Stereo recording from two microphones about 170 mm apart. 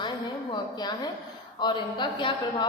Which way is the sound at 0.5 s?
25° left (ahead or behind).